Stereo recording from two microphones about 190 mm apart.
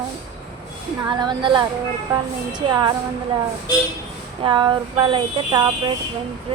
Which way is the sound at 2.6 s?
25° right (ahead or behind).